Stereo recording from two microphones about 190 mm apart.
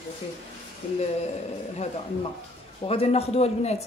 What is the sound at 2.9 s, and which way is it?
Speech, 30° left (ahead or behind).